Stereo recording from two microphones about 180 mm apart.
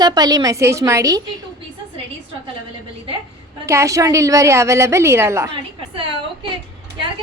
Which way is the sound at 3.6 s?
15° right (ahead or behind).